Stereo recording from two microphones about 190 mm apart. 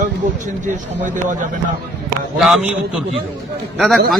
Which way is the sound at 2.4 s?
5° right (ahead or behind).